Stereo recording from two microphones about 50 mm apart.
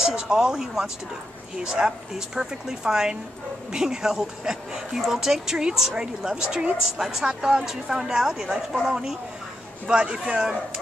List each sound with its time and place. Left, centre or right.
0.1 s a woman's voice: centre